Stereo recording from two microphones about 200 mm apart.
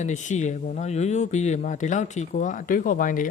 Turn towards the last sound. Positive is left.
turn(degrees=40)  # may be behind; listen again after turning